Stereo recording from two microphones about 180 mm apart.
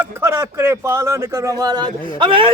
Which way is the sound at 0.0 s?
15° right (ahead or behind).